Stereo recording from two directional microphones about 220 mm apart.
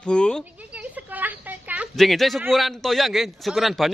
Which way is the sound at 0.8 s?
5° right (ahead or behind).